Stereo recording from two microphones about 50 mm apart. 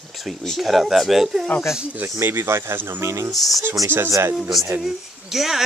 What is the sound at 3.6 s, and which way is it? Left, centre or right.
Speech, right.